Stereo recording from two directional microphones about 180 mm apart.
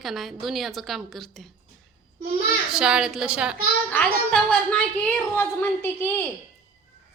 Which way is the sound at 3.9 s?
5° left (ahead or behind).